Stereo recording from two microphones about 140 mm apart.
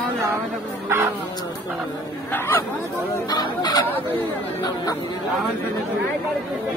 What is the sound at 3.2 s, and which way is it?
Chicken, 30° left (ahead or behind).